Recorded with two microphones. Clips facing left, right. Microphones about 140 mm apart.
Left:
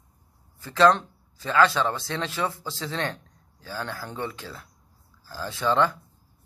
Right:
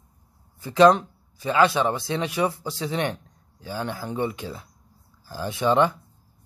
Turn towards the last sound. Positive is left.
turn(degrees=-15)  # may be behind; listen again after turning